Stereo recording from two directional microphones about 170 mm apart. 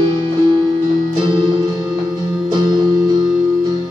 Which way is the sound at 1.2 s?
25° right (ahead or behind).